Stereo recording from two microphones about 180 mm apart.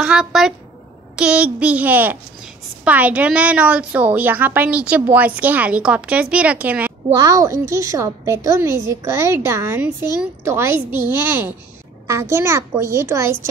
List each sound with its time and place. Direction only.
0.0 s a woman's voice: 5° right (ahead or behind)
7.2 s a child's voice: 20° right (ahead or behind)